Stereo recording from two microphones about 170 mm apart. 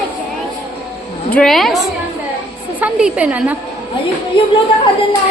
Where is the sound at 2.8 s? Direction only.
5° right (ahead or behind).